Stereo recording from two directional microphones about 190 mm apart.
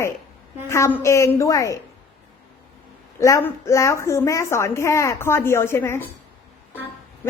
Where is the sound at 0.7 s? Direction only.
15° left (ahead or behind).